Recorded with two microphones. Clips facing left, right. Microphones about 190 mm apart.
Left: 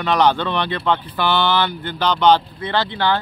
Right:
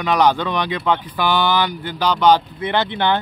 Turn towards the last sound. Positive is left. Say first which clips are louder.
# right 1 dB
turn(degrees=-20)  # may be behind; listen again after turning